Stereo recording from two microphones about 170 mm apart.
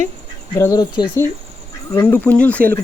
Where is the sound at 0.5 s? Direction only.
20° left (ahead or behind).